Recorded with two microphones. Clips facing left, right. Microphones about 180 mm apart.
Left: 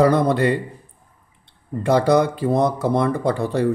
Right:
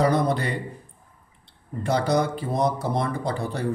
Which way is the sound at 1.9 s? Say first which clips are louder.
Left 6 dB; 60° left (ahead or behind).